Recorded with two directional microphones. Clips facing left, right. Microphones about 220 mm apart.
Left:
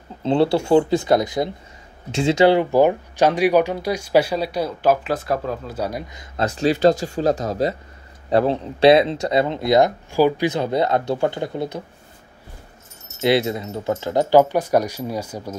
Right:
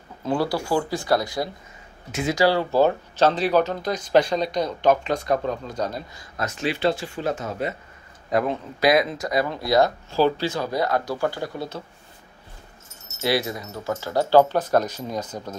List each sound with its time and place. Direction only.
0.2 s speech: 25° left (ahead or behind)
6.3 s speech: 35° left (ahead or behind)
13.2 s speech: 25° left (ahead or behind)